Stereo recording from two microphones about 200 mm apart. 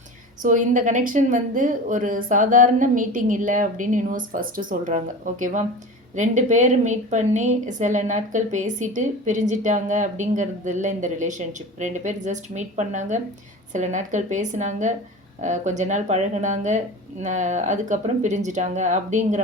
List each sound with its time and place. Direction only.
0.4 s a woman's voice: 40° right (ahead or behind)